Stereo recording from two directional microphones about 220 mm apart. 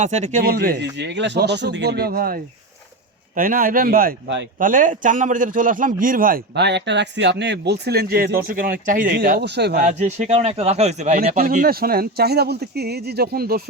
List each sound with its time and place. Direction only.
0.0 s a man's voice: 30° right (ahead or behind)
0.9 s a man's voice: 55° right (ahead or behind)
10.0 s speech: 30° right (ahead or behind)